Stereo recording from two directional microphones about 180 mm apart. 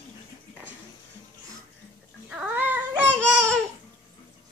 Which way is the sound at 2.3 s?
10° right (ahead or behind).